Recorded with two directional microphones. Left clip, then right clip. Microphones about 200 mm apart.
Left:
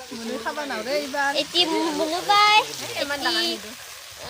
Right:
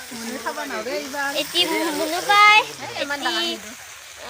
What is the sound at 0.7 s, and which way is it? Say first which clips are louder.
Speech: left 1 dB; 60° left (ahead or behind).